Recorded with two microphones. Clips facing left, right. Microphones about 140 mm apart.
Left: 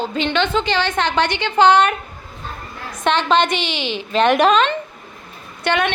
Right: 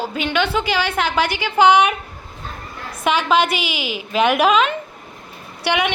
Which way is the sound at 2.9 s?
10° right (ahead or behind).